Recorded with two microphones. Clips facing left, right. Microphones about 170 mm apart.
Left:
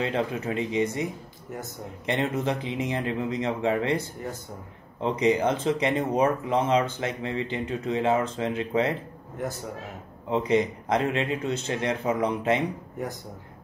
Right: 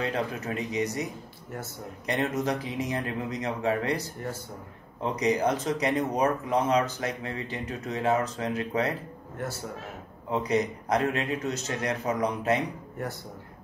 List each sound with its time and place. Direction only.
0.0 s speech: 25° left (ahead or behind)
5.0 s speech: 25° left (ahead or behind)
10.3 s speech: 25° left (ahead or behind)